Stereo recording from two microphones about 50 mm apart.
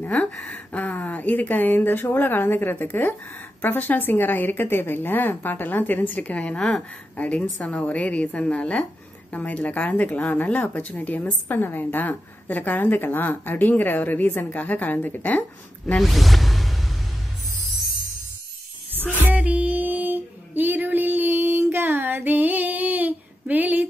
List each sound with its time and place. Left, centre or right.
0.0 s a woman's voice: left
16.0 s music: centre
19.3 s a sound: right